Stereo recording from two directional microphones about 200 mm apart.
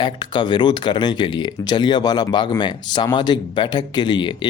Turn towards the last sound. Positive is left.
turn(degrees=25)  # may be behind; listen again after turning